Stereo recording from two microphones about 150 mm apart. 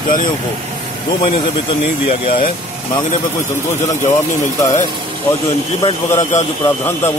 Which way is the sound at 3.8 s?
50° left (ahead or behind).